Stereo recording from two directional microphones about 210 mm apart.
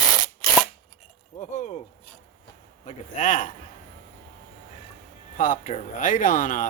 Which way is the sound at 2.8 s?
35° left (ahead or behind).